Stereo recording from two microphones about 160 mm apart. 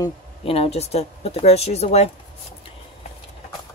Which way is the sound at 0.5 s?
40° left (ahead or behind).